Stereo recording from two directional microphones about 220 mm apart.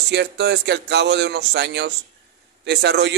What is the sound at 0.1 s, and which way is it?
Speech, 50° right (ahead or behind).